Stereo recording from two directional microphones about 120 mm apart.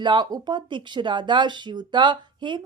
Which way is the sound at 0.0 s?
35° right (ahead or behind).